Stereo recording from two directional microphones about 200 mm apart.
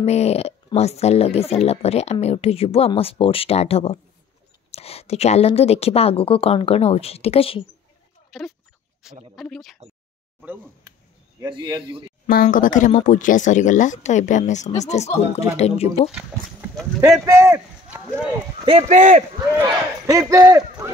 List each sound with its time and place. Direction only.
0.0 s a woman's voice: 30° left (ahead or behind)
8.3 s speech: centre (ahead or behind)
11.4 s speech: 20° right (ahead or behind)
12.3 s speech: 45° left (ahead or behind)
17.0 s speech: 15° right (ahead or behind)
18.7 s speech: 30° right (ahead or behind)
19.5 s speech: 15° right (ahead or behind)